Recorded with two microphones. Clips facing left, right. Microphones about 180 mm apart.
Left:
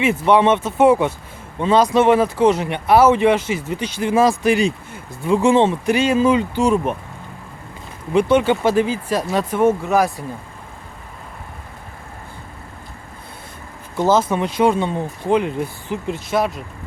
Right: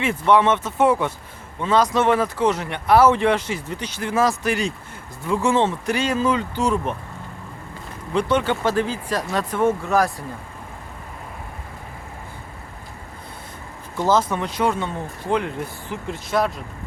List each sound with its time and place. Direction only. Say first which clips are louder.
0.0 s speech: left 3 dB; 20° left (ahead or behind)
2.0 s speech: left 5 dB; 25° left (ahead or behind)
2.5 s speech: left 3 dB; 15° left (ahead or behind)
8.1 s speech: left 5 dB; 10° left (ahead or behind)
9.5 s speech: left 3 dB; 20° left (ahead or behind)
14.3 s speech: left 5 dB; 15° left (ahead or behind)